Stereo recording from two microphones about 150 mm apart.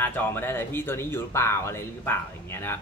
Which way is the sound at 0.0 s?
15° left (ahead or behind).